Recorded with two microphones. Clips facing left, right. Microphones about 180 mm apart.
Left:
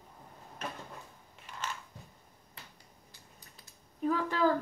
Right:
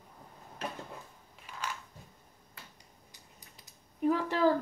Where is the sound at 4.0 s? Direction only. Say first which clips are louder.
Right 2 dB; 15° right (ahead or behind).